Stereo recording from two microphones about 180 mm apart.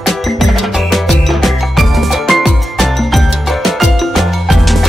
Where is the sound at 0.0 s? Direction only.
Centre (ahead or behind).